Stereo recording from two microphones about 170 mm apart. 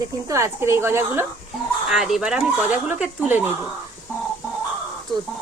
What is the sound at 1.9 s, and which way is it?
Speech, centre (ahead or behind).